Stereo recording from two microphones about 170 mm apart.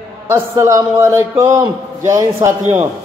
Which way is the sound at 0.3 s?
20° right (ahead or behind).